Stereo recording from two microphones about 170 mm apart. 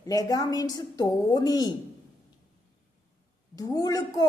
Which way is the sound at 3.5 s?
20° left (ahead or behind).